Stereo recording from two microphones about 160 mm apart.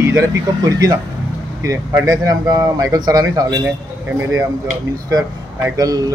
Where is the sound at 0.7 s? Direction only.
20° right (ahead or behind).